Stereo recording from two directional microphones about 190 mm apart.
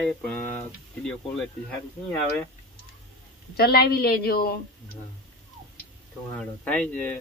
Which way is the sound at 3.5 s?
55° left (ahead or behind).